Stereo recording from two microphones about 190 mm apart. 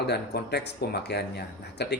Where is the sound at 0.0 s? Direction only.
60° left (ahead or behind).